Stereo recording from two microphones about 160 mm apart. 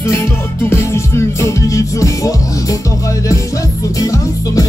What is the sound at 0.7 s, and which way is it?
Music, 15° left (ahead or behind).